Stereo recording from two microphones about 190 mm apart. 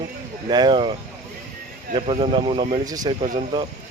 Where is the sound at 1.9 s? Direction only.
30° right (ahead or behind).